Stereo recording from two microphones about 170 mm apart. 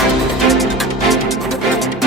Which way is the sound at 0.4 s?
Centre (ahead or behind).